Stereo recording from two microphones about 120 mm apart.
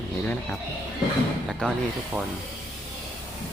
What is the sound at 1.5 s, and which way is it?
Speech, 5° left (ahead or behind).